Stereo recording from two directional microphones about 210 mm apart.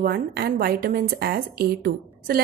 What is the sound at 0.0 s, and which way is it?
A woman's voice, 45° right (ahead or behind).